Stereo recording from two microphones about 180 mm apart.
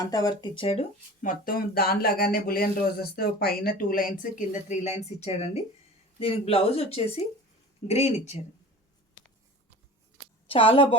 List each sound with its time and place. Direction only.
0.0 s speech: 20° left (ahead or behind)
1.2 s speech: 50° left (ahead or behind)
10.5 s speech: 30° left (ahead or behind)